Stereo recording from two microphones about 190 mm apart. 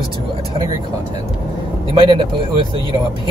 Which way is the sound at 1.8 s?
25° right (ahead or behind).